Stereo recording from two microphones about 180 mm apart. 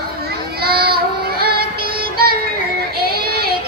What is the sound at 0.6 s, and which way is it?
Child singing, 60° right (ahead or behind).